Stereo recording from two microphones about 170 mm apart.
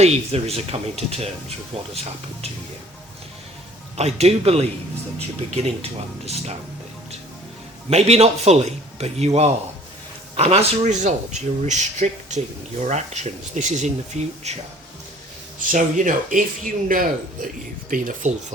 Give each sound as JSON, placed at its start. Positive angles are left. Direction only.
{"t": 0.0, "sound": "speech", "side_deg": -35}
{"t": 3.9, "sound": "speech", "side_deg": -40}
{"t": 5.6, "sound": "speech", "side_deg": -40}
{"t": 7.9, "sound": "speech", "side_deg": -40}
{"t": 15.5, "sound": "speech", "side_deg": -50}